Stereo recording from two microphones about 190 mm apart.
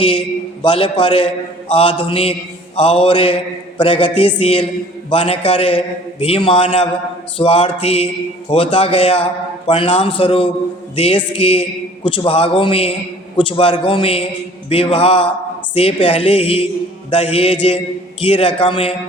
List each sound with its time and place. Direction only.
0.6 s a man's voice: 25° left (ahead or behind)
7.3 s mantra: 30° left (ahead or behind)
8.4 s a man's voice: 30° left (ahead or behind)